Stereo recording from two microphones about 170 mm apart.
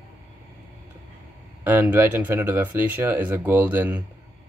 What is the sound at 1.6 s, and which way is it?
Speech, 10° right (ahead or behind).